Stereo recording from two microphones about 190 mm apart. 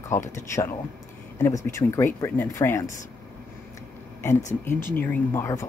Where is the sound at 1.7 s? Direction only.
15° left (ahead or behind).